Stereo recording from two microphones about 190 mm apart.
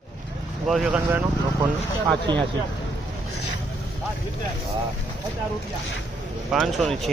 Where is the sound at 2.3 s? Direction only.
25° right (ahead or behind).